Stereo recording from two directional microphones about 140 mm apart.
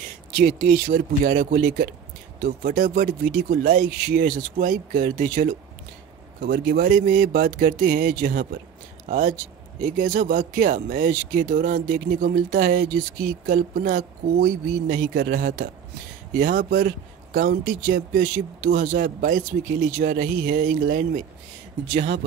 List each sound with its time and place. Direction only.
0.4 s speech: 90° right
6.4 s speech: 90° right
9.0 s speech: 70° right (ahead or behind)